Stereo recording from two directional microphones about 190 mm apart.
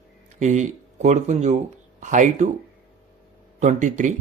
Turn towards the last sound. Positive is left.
turn(degrees=-40)  # may be behind; listen again after turning